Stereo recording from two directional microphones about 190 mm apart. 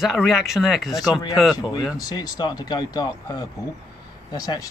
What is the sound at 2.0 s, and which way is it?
Speech, 20° left (ahead or behind).